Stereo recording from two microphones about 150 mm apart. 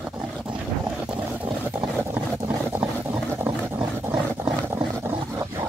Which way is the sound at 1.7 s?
15° right (ahead or behind).